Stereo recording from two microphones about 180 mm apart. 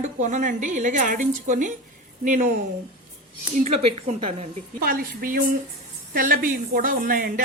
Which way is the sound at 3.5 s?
40° right (ahead or behind).